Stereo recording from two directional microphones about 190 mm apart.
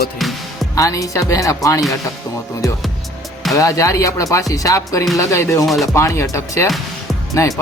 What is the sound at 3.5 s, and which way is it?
Speech, 15° left (ahead or behind).